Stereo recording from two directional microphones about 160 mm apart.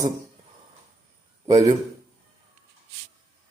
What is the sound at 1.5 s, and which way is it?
Speech, 20° right (ahead or behind).